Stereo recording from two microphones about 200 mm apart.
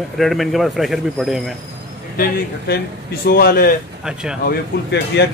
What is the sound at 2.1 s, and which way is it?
A man's voice, 50° left (ahead or behind).